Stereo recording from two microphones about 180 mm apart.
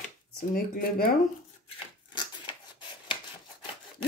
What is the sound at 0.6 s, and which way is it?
Speech, 55° left (ahead or behind).